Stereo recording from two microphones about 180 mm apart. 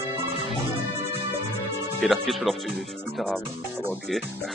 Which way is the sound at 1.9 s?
Centre (ahead or behind).